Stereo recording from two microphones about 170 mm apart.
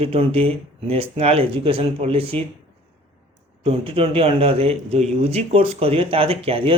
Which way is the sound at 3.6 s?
35° right (ahead or behind).